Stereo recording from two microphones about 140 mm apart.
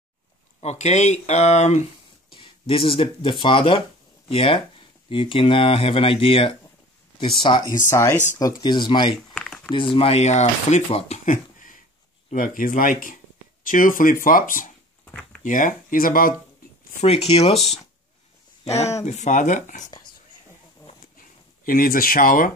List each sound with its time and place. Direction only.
0.6 s speech: 55° left (ahead or behind)
2.3 s speech: 40° left (ahead or behind)
7.9 s speech: 20° left (ahead or behind)
9.3 s a sound: 5° left (ahead or behind)
9.7 s speech: 40° left (ahead or behind)
12.3 s speech: 75° left (ahead or behind)
15.0 s a sound: 5° left (ahead or behind)
15.4 s speech: 70° left (ahead or behind); by 16.3 s 90° left
17.0 s speech: 45° left (ahead or behind); by 19.9 s 60° left (ahead or behind)
21.2 s speech: 85° left